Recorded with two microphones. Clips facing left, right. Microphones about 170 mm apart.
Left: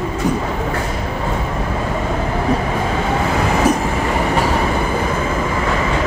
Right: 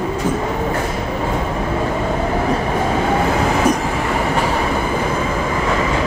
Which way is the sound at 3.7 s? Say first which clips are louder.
Left 1 dB; 5° left (ahead or behind).